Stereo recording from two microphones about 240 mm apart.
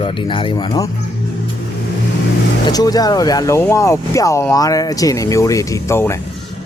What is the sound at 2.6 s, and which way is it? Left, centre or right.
Speech, centre.